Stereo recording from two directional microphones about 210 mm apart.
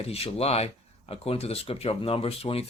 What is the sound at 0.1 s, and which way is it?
Speech, 30° left (ahead or behind).